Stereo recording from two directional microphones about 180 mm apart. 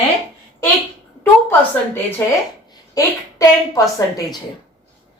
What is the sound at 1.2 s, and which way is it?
A woman's voice, 10° left (ahead or behind).